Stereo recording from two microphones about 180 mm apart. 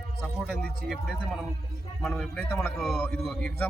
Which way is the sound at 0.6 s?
5° left (ahead or behind).